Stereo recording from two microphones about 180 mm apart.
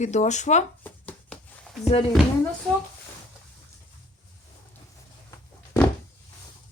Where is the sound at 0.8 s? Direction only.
5° left (ahead or behind).